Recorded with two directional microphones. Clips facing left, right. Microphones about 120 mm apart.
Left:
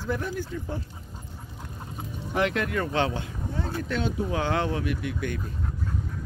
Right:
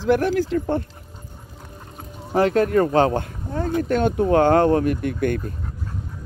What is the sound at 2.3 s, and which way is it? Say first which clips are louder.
Speech: right 8 dB; 40° right (ahead or behind).